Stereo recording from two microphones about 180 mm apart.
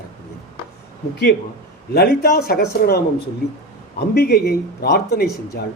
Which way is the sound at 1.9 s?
60° left (ahead or behind).